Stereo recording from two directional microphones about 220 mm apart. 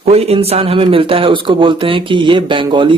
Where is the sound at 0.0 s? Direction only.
30° right (ahead or behind).